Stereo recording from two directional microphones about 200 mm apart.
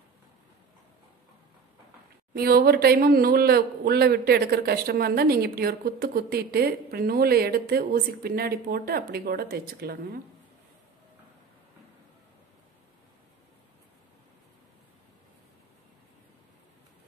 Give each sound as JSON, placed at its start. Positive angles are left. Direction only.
{"t": 2.3, "sound": "speech", "side_deg": -50}